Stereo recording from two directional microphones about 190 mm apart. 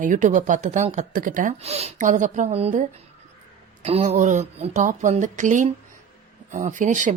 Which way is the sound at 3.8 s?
35° right (ahead or behind).